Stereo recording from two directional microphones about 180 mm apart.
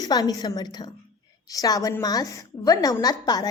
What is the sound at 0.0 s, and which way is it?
A woman's voice, 20° left (ahead or behind).